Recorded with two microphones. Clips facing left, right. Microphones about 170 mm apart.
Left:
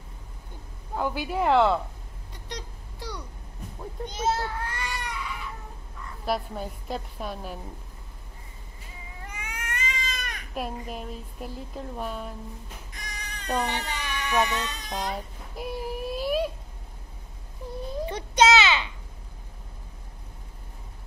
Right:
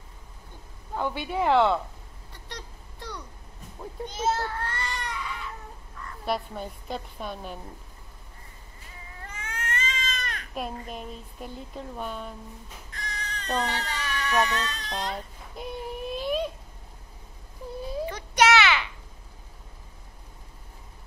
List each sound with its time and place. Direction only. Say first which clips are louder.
0.9 s speech: left 1 dB; 5° left (ahead or behind)
2.5 s a sound: left 4 dB; 10° left (ahead or behind)
4.2 s baby cry: even; 10° left (ahead or behind)
6.2 s speech: left 1 dB; centre (ahead or behind)
9.2 s cat: right 2 dB; 15° left (ahead or behind)
10.8 s speech: left 2 dB; 5° left (ahead or behind)
12.9 s cat: right 6 dB; 15° left (ahead or behind)
18.0 s a sound: left 2 dB; 25° left (ahead or behind)